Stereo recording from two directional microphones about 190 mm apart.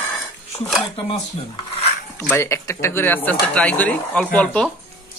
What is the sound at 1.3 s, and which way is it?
Rub, 35° left (ahead or behind).